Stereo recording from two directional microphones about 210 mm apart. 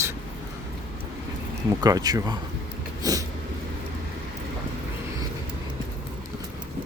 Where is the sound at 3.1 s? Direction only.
15° right (ahead or behind).